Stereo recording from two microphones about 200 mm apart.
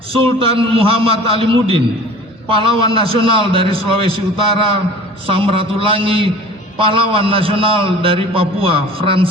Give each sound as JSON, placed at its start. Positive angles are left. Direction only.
{"t": 0.1, "sound": "a man's voice", "side_deg": -25}